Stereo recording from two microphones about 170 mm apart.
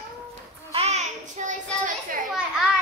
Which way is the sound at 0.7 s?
40° right (ahead or behind).